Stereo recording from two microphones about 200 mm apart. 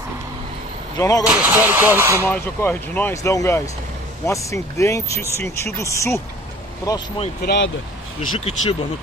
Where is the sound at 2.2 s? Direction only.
10° left (ahead or behind).